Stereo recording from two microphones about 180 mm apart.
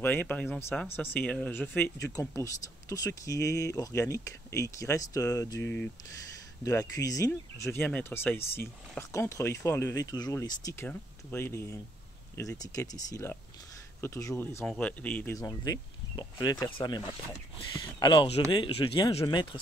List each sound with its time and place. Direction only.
0.0 s speech: 10° left (ahead or behind)
15.3 s speech: 20° left (ahead or behind)